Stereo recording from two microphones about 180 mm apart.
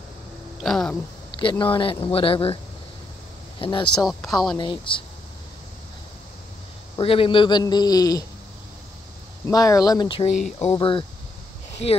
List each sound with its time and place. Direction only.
0.6 s speech: centre (ahead or behind)
1.4 s a man's voice: 25° left (ahead or behind)
3.6 s a man's voice: 30° left (ahead or behind)
3.9 s speech: centre (ahead or behind)
4.6 s a man's voice: 25° left (ahead or behind)
7.0 s a man's voice: 30° left (ahead or behind)
9.5 s a man's voice: 20° left (ahead or behind)